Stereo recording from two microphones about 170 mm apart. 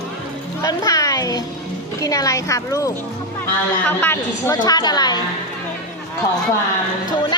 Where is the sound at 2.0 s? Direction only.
20° left (ahead or behind).